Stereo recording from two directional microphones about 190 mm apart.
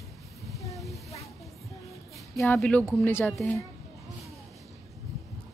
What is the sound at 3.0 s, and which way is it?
Speech, 10° left (ahead or behind).